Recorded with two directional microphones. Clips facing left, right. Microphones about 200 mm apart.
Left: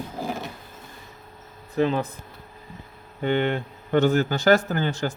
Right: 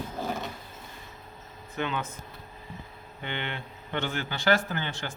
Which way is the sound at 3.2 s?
45° left (ahead or behind).